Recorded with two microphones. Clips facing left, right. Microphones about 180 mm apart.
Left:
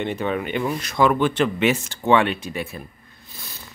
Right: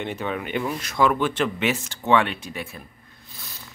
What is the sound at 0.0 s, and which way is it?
Speech, 5° right (ahead or behind).